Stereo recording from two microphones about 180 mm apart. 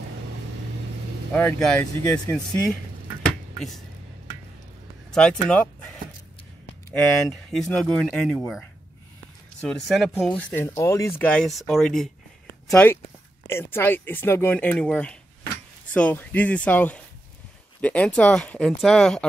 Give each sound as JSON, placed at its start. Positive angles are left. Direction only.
{"t": 1.3, "sound": "speech", "side_deg": 10}
{"t": 5.1, "sound": "speech", "side_deg": 5}
{"t": 6.9, "sound": "speech", "side_deg": 5}